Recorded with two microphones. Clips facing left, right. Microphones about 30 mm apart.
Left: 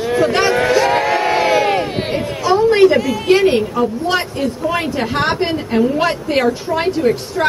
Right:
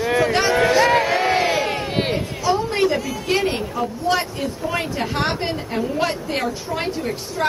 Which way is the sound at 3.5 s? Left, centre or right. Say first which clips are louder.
Left 8 dB; left.